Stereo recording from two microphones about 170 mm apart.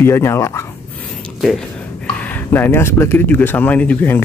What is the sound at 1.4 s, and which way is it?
Speech, centre (ahead or behind).